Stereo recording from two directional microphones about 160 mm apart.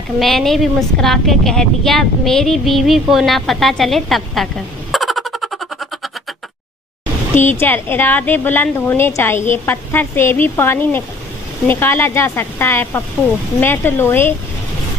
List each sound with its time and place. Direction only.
0.2 s a woman's voice: centre (ahead or behind)
7.3 s a woman's voice: 15° left (ahead or behind)